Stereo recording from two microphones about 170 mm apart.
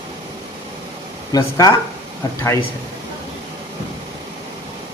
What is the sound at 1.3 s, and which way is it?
Speech, 20° left (ahead or behind).